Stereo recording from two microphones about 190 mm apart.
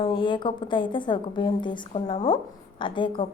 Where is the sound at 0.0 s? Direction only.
25° left (ahead or behind).